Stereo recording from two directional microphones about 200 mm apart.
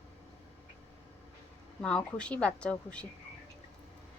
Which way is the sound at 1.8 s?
5° left (ahead or behind).